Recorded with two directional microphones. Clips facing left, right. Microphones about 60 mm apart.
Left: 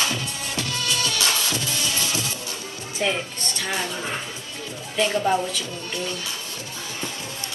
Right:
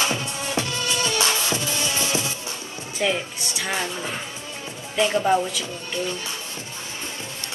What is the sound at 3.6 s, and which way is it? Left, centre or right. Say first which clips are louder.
Speech: right 1 dB; centre.